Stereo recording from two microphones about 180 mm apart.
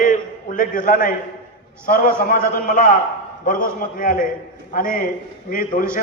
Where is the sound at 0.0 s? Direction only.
50° left (ahead or behind).